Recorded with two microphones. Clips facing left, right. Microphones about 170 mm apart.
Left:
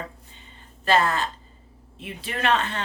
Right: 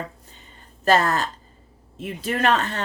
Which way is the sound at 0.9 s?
40° right (ahead or behind).